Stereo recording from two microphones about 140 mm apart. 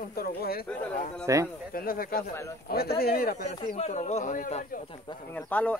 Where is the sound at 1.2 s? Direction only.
20° right (ahead or behind).